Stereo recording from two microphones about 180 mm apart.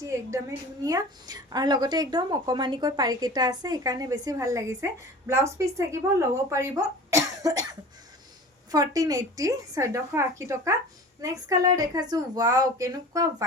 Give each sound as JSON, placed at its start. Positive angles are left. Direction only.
{"t": 0.0, "sound": "a woman's voice", "side_deg": -20}
{"t": 8.7, "sound": "a woman's voice", "side_deg": -20}